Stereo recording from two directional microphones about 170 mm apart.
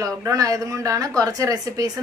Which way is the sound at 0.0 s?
20° right (ahead or behind).